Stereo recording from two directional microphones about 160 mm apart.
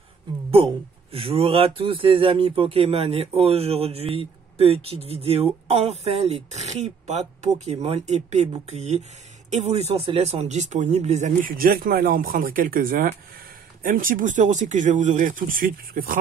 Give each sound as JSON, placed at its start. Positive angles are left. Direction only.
{"t": 1.1, "sound": "speech", "side_deg": -35}